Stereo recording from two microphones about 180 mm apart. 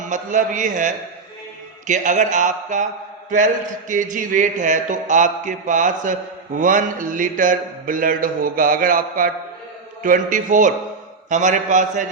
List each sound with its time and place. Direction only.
0.0 s a man's voice: 45° right (ahead or behind)